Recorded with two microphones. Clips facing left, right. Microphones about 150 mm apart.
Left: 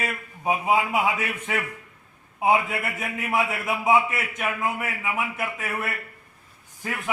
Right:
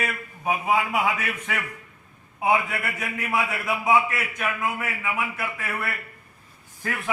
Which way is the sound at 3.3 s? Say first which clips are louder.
Left 1 dB; 25° left (ahead or behind).